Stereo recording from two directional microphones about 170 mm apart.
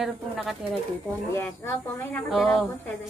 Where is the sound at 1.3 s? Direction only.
15° left (ahead or behind).